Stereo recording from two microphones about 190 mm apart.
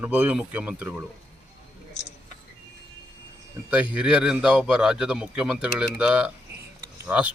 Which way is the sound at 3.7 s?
5° right (ahead or behind).